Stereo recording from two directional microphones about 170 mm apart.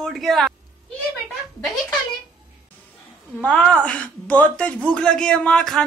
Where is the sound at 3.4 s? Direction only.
5° left (ahead or behind).